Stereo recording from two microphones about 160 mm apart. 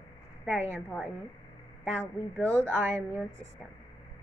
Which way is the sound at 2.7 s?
15° right (ahead or behind).